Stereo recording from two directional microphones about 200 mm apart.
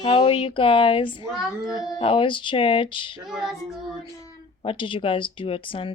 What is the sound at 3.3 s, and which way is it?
Female singing, centre (ahead or behind).